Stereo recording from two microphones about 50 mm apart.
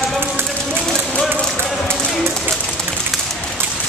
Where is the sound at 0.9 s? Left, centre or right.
Centre.